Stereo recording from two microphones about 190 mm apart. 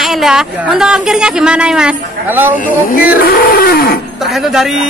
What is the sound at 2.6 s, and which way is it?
Wild animals, 45° left (ahead or behind).